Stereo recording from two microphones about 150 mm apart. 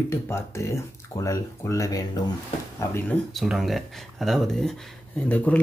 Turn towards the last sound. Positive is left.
turn(degrees=10)  # may be behind; listen again after turning